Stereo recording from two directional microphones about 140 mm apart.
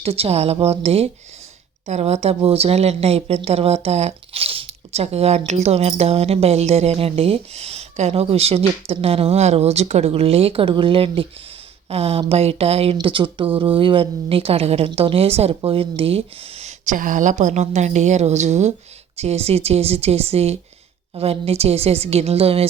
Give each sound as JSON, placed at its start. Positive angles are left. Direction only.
{"t": 0.0, "sound": "a woman's voice", "side_deg": -45}